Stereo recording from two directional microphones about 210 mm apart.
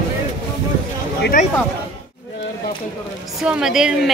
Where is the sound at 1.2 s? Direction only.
40° left (ahead or behind).